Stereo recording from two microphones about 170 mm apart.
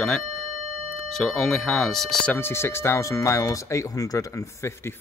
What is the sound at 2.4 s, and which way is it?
Speech, 15° left (ahead or behind).